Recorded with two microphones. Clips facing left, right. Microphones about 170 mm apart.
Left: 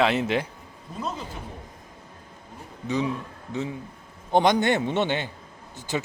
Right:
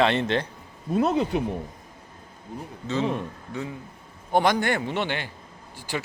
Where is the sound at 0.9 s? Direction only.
70° right (ahead or behind).